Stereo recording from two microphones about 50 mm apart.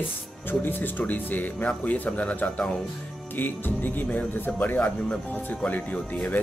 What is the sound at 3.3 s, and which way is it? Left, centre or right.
Speech, left.